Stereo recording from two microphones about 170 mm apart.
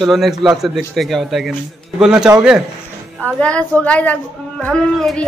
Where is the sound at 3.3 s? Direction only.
5° left (ahead or behind).